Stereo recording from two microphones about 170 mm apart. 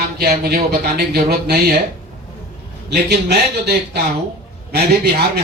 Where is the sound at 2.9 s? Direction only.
75° right (ahead or behind).